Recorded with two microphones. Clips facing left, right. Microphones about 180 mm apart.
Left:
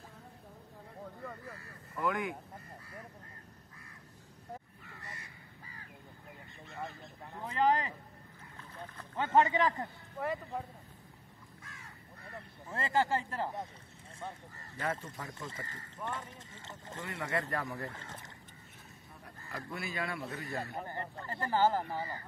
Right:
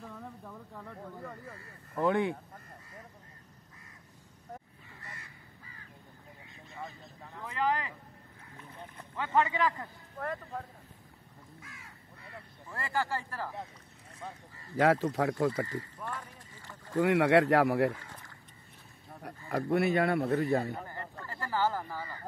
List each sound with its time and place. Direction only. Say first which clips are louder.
0.5 s a sound: right 7 dB; 85° right
1.5 s speech: right 3 dB; 30° right (ahead or behind)
7.4 s a sound: left 2 dB; 25° left (ahead or behind)
8.5 s a sound: even; 10° right (ahead or behind)
9.1 s a man's voice: left 2 dB; 25° left (ahead or behind)
10.1 s speech: left 1 dB; 15° left (ahead or behind)
12.6 s a man's voice: left 2 dB; 20° left (ahead or behind)
14.8 s speech: right 12 dB; 90° right
16.0 s a man's voice: even; 25° left (ahead or behind)
17.0 s speech: right 14 dB; 90° right
17.9 s a sound: left 1 dB; 25° left (ahead or behind)
19.2 s speech: right 12 dB; 65° right (ahead or behind)
20.8 s a man's voice: left 2 dB; 25° left (ahead or behind)